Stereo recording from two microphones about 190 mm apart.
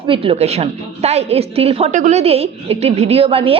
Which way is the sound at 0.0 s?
30° right (ahead or behind).